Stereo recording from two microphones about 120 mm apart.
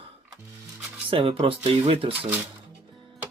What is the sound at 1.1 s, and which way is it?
Speech, 50° right (ahead or behind).